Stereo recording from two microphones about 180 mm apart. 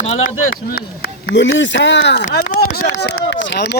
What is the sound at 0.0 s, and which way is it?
Speech, 40° left (ahead or behind).